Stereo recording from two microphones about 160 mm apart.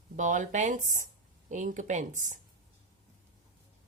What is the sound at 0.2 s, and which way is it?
A woman's voice, 50° right (ahead or behind).